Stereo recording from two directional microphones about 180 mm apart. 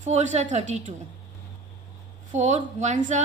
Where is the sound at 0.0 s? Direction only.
40° right (ahead or behind).